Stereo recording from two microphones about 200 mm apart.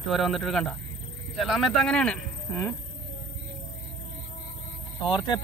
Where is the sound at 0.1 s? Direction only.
Centre (ahead or behind).